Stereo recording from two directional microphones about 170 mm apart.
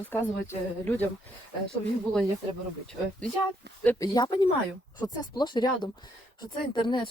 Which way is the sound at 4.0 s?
25° left (ahead or behind).